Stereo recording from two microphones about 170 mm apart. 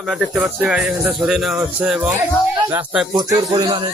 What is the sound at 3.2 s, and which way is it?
Speech, 25° right (ahead or behind).